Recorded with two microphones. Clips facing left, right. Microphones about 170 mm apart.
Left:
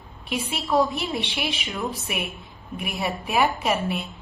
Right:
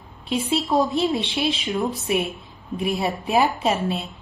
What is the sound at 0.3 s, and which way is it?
A woman's voice, 25° right (ahead or behind).